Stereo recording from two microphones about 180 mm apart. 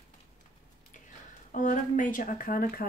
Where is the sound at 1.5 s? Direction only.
45° left (ahead or behind).